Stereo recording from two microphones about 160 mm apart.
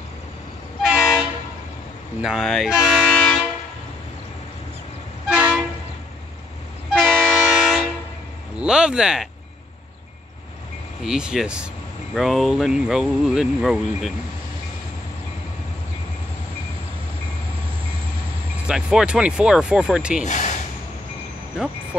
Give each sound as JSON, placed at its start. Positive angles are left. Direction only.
{"t": 0.8, "sound": "train", "side_deg": -5}
{"t": 2.2, "sound": "speech", "side_deg": 0}
{"t": 3.1, "sound": "train", "side_deg": 5}
{"t": 5.3, "sound": "train", "side_deg": -10}
{"t": 6.9, "sound": "train", "side_deg": 5}
{"t": 8.5, "sound": "speech", "side_deg": -5}
{"t": 11.1, "sound": "speech", "side_deg": -5}
{"t": 18.7, "sound": "speech", "side_deg": -5}
{"t": 20.2, "sound": "speech", "side_deg": 50}